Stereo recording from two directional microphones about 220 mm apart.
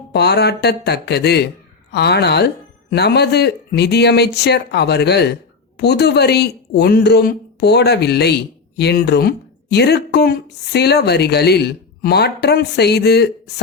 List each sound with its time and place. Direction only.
0.1 s speech: 50° left (ahead or behind)